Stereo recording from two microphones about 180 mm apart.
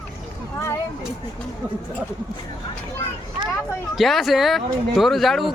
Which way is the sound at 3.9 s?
Centre (ahead or behind).